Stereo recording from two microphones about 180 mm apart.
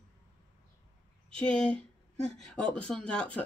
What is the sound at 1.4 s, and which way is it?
Speech, 5° left (ahead or behind).